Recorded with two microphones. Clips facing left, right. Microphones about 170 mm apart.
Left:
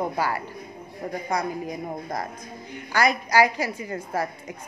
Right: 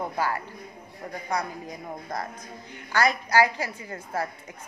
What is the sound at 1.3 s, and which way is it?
A woman's voice, 10° left (ahead or behind).